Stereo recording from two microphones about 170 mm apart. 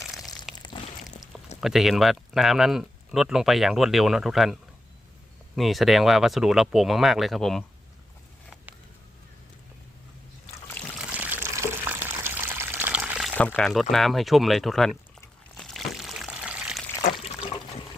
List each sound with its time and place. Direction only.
0.5 s a sound: 25° left (ahead or behind)
1.0 s a sound: centre (ahead or behind)
1.6 s speech: centre (ahead or behind)
10.9 s water: 10° right (ahead or behind)
13.6 s speech: centre (ahead or behind)
15.5 s water: centre (ahead or behind)